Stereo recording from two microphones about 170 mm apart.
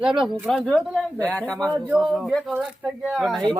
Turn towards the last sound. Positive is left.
turn(degrees=0)  # may be behind; listen again after turning